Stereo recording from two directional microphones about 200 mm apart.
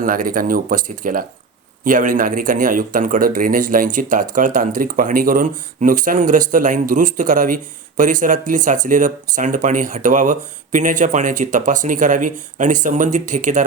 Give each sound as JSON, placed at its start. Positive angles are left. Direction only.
{"t": 0.0, "sound": "a man's voice", "side_deg": -45}